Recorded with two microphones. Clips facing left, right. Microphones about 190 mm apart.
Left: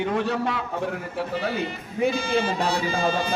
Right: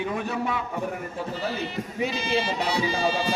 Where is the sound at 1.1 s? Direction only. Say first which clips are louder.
Left 3 dB; 65° left (ahead or behind).